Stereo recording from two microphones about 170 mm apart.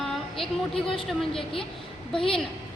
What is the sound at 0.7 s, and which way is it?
A woman's voice, 30° left (ahead or behind).